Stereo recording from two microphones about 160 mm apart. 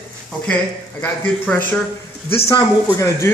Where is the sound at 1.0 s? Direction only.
10° left (ahead or behind).